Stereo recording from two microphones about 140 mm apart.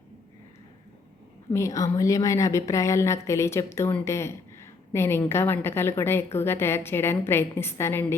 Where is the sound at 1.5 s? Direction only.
20° left (ahead or behind).